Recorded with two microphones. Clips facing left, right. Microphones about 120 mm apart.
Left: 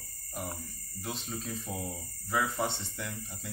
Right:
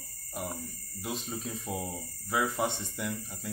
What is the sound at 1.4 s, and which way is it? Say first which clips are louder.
Speech: right 2 dB; 15° right (ahead or behind).